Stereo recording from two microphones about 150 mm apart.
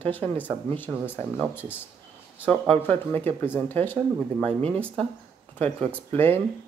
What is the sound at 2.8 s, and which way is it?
Speech, 15° left (ahead or behind).